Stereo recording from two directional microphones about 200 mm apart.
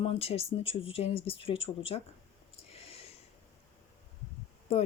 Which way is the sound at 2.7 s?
30° left (ahead or behind).